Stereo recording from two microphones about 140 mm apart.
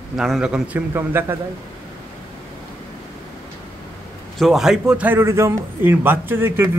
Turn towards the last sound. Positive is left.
turn(degrees=-15)  # may be behind; listen again after turning